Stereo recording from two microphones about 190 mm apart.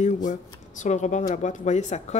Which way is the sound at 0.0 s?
40° left (ahead or behind).